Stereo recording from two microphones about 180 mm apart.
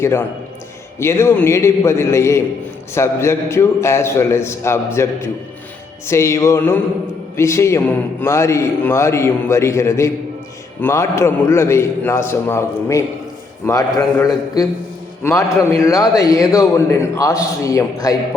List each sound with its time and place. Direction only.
0.0 s a man's voice: 15° left (ahead or behind)